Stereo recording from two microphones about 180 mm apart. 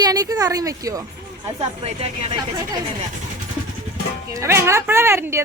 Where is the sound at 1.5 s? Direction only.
30° right (ahead or behind).